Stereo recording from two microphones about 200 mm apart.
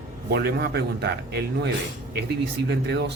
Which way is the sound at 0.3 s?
50° right (ahead or behind).